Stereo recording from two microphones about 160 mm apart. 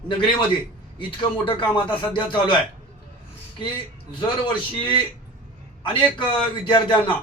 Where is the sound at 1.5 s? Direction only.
30° left (ahead or behind).